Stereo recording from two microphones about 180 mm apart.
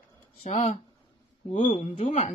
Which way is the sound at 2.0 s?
40° left (ahead or behind).